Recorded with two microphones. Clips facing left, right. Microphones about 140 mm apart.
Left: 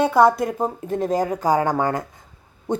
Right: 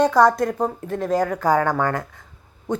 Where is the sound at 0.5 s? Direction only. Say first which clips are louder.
Left 1 dB; 20° left (ahead or behind).